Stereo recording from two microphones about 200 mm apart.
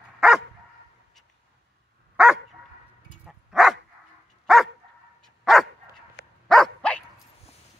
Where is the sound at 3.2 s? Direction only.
Centre (ahead or behind).